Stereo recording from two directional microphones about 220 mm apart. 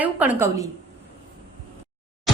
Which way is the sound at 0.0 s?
5° right (ahead or behind).